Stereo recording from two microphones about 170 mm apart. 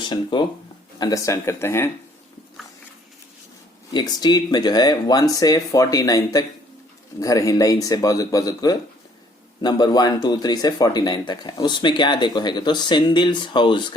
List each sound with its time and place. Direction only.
0.1 s speech: 30° left (ahead or behind)
3.9 s speech: 25° left (ahead or behind)